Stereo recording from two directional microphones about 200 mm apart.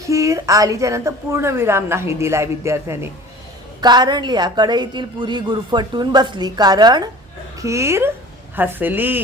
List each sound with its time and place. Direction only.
0.0 s a woman's voice: 15° right (ahead or behind)